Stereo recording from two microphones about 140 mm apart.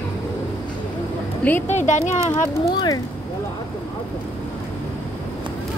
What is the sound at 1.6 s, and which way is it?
Speech, 60° left (ahead or behind).